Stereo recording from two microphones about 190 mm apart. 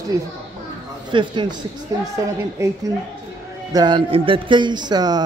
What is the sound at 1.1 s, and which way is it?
Speech, 25° right (ahead or behind).